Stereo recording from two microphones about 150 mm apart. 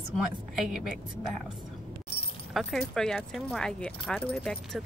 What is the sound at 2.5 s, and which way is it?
Speech, 5° left (ahead or behind).